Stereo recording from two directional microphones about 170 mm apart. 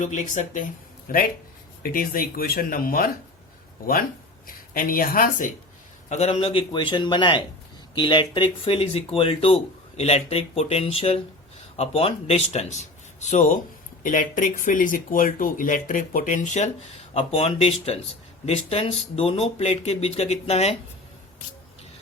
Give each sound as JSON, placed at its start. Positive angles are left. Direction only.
{"t": 0.0, "sound": "speech", "side_deg": 45}
{"t": 1.0, "sound": "speech", "side_deg": 55}
{"t": 4.7, "sound": "speech", "side_deg": 55}
{"t": 6.1, "sound": "a man's voice", "side_deg": 40}